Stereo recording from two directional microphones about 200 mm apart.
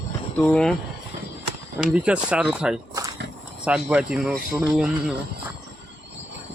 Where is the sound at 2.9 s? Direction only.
15° right (ahead or behind).